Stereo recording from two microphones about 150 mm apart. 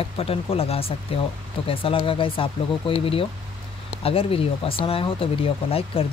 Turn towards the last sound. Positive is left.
turn(degrees=40)  # may be behind; listen again after turning